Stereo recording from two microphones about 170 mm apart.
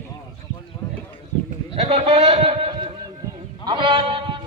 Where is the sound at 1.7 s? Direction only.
35° right (ahead or behind).